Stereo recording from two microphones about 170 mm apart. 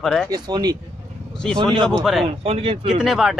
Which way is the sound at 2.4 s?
30° right (ahead or behind).